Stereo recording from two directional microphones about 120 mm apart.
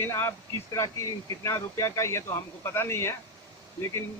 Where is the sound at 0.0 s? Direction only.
20° left (ahead or behind).